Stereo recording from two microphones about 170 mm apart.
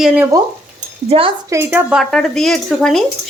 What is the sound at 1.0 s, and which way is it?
Speech, 35° right (ahead or behind).